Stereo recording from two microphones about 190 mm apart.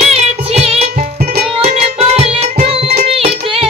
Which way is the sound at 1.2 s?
55° right (ahead or behind).